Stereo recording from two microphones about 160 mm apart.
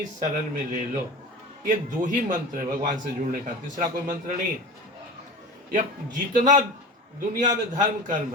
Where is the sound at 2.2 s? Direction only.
55° right (ahead or behind).